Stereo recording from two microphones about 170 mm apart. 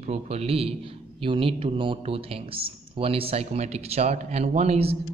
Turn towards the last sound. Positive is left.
turn(degrees=-40)  # may be behind; listen again after turning